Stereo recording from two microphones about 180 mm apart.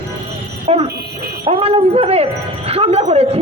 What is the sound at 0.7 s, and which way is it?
Speech, 35° right (ahead or behind).